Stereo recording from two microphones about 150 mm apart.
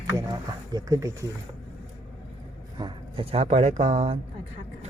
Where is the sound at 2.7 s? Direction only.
30° right (ahead or behind).